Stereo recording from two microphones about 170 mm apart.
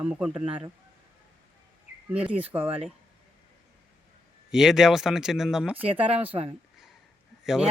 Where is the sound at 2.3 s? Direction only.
10° right (ahead or behind).